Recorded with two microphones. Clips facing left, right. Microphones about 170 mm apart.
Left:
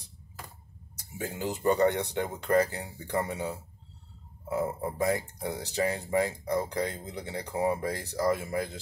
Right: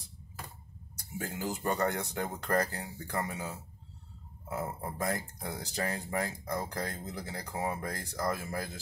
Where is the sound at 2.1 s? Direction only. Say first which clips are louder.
Left 3 dB; 25° left (ahead or behind).